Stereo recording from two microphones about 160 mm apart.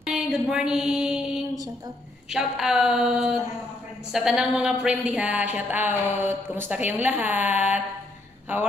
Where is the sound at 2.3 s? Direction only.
5° right (ahead or behind).